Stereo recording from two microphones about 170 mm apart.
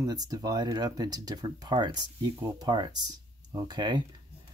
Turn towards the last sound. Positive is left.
turn(degrees=-25)  # may be behind; listen again after turning